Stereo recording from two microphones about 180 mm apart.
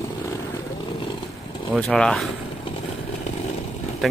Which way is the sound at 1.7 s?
5° left (ahead or behind).